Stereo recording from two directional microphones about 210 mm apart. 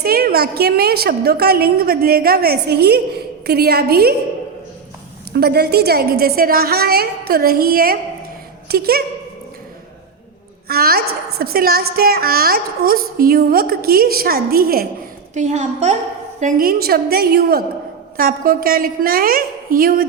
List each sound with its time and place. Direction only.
0.0 s a woman's voice: 45° right (ahead or behind)
5.3 s a woman's voice: 50° right (ahead or behind)
10.7 s a woman's voice: 45° right (ahead or behind)
15.4 s a woman's voice: 35° right (ahead or behind)